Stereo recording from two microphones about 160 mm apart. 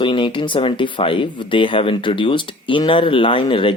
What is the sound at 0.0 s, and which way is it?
Speech, 30° left (ahead or behind).